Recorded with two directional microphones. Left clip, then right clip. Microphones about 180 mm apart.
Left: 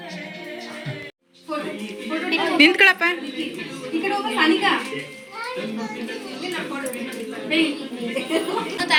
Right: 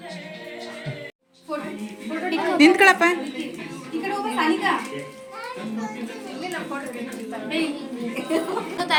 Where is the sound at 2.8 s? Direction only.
Centre (ahead or behind).